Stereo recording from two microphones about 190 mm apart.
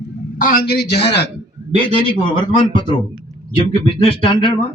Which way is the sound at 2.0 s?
25° left (ahead or behind).